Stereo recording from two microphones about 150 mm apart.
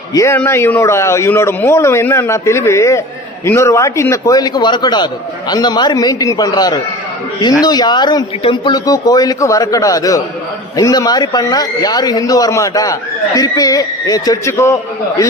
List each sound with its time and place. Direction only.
0.1 s a man's voice: 20° left (ahead or behind)